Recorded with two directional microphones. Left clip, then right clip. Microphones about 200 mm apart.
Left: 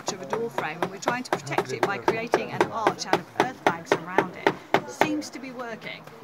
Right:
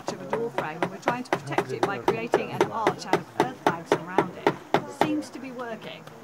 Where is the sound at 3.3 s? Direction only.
20° left (ahead or behind).